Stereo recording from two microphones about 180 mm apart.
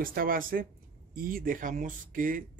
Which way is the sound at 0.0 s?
50° right (ahead or behind).